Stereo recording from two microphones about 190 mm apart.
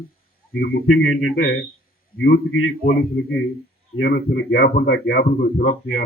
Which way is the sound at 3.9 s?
60° left (ahead or behind).